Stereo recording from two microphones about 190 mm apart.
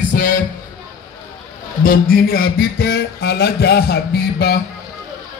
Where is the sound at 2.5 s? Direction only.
55° left (ahead or behind).